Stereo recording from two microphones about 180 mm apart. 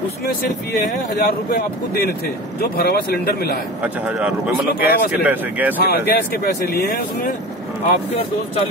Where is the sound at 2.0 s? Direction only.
55° left (ahead or behind).